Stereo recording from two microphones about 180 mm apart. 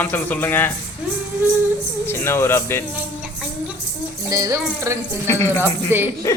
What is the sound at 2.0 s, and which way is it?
Speech, 15° left (ahead or behind).